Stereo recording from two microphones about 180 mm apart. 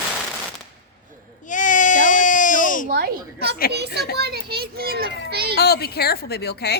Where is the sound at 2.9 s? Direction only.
60° right (ahead or behind).